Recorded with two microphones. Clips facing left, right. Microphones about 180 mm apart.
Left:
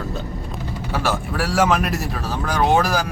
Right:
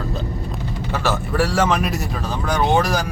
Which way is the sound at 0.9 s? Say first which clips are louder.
Right 1 dB; 10° left (ahead or behind).